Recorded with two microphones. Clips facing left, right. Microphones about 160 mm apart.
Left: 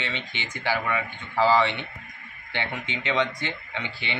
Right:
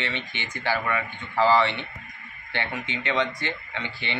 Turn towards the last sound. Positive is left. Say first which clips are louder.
# even
turn(degrees=15)  # may be behind; listen again after turning